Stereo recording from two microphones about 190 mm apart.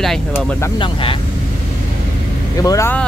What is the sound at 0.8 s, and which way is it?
Speech, 25° left (ahead or behind).